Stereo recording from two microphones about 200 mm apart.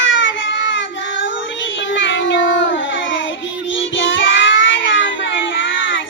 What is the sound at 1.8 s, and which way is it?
Child singing, 70° left (ahead or behind).